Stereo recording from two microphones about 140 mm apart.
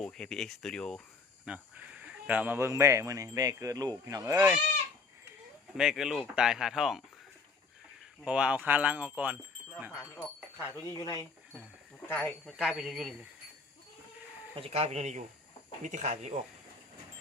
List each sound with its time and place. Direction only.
0.0 s speech: 5° left (ahead or behind)
1.5 s speech: 10° right (ahead or behind); by 4.4 s 25° right (ahead or behind)
5.7 s speech: 5° right (ahead or behind)
8.2 s speech: 10° right (ahead or behind)
9.9 s speech: 20° left (ahead or behind)
12.0 s speech: 15° left (ahead or behind)
12.5 s speech: 5° right (ahead or behind)
14.5 s speech: 45° right (ahead or behind)